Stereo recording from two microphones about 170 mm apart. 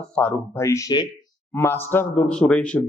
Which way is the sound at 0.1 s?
5° left (ahead or behind).